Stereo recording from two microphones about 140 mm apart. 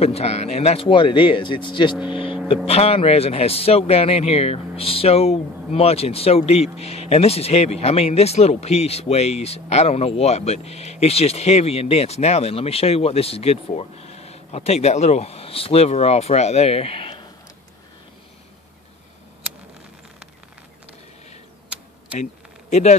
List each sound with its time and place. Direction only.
0.0 s speech: 50° left (ahead or behind)
22.7 s speech: 55° left (ahead or behind)